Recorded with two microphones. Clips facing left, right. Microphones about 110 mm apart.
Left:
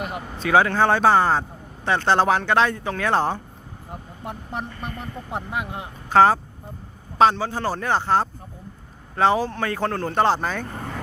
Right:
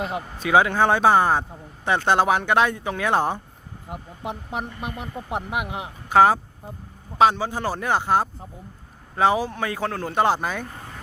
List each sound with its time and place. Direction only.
0.3 s a man's voice: 15° right (ahead or behind)
10.8 s vehicle: 75° left (ahead or behind)